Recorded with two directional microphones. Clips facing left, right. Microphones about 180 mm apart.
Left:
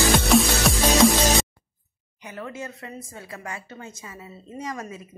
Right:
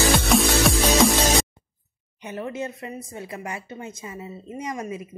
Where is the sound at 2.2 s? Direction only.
25° right (ahead or behind).